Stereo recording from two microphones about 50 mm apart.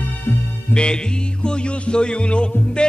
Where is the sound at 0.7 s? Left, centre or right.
Left.